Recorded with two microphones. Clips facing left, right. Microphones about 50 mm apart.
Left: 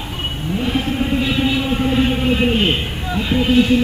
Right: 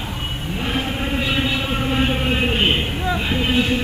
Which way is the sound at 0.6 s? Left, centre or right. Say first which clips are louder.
Left 4 dB; centre.